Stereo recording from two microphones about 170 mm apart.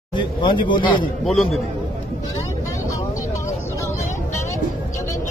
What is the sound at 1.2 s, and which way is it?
Speech, centre (ahead or behind).